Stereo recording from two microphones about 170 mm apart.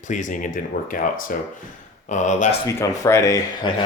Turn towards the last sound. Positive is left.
turn(degrees=20)  # may be behind; listen again after turning